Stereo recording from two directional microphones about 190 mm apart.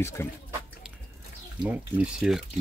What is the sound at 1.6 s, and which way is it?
Speech, 5° right (ahead or behind).